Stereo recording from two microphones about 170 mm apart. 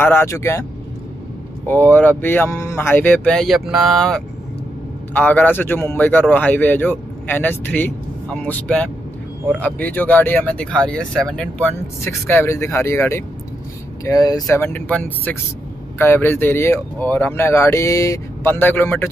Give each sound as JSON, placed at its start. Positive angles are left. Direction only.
{"t": 0.0, "sound": "a man's voice", "side_deg": 10}
{"t": 1.7, "sound": "a man's voice", "side_deg": 10}